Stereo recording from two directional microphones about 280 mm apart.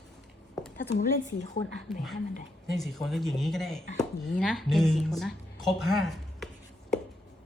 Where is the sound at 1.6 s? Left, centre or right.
Right.